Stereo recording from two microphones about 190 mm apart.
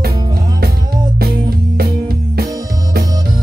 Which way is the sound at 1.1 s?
55° right (ahead or behind).